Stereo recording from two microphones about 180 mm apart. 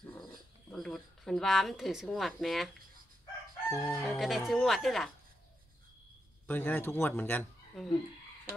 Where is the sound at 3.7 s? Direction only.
15° left (ahead or behind).